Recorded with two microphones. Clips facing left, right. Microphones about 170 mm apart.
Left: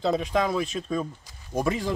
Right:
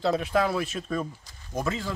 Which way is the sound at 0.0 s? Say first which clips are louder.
Even; centre (ahead or behind).